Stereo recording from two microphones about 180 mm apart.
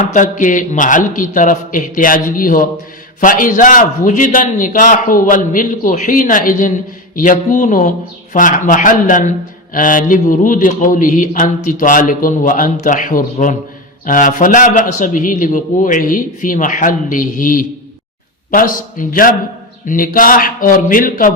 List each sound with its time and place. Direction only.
0.0 s a man's voice: 45° left (ahead or behind)